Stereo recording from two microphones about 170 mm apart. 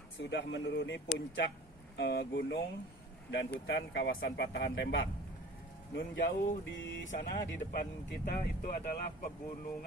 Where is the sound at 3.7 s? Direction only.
80° left.